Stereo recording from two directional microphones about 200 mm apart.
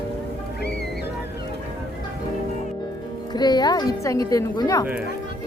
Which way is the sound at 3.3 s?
20° left (ahead or behind).